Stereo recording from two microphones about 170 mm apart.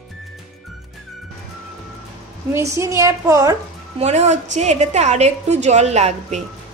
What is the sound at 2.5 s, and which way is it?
A woman's voice, 15° right (ahead or behind).